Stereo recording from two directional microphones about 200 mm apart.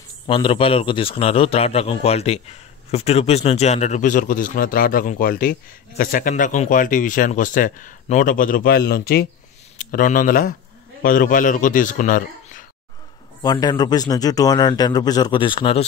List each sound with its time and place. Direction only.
0.3 s a man's voice: 25° left (ahead or behind)
13.4 s a man's voice: 20° left (ahead or behind)